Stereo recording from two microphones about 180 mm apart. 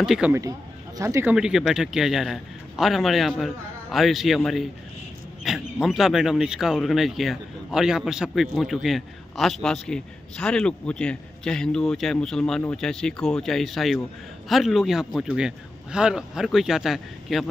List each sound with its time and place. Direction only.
0.0 s speech: 5° right (ahead or behind)
0.3 s speech: 20° right (ahead or behind)
1.3 s speech: 5° right (ahead or behind)